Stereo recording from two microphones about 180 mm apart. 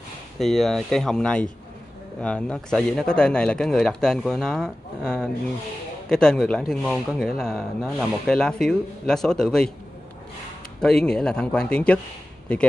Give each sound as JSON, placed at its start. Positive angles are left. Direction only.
{"t": 0.4, "sound": "speech", "side_deg": 0}
{"t": 10.8, "sound": "speech", "side_deg": 5}